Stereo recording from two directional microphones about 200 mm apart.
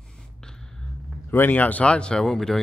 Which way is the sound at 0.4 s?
5° left (ahead or behind).